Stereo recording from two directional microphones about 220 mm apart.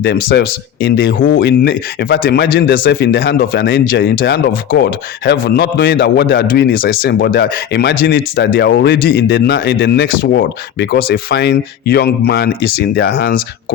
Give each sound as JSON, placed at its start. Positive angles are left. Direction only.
{"t": 0.0, "sound": "speech", "side_deg": 45}